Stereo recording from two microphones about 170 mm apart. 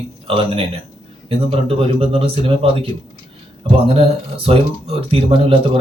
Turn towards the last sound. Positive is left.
turn(degrees=-35)  # may be behind; listen again after turning